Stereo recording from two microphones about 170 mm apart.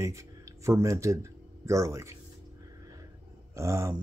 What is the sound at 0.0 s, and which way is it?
Speech, 20° right (ahead or behind).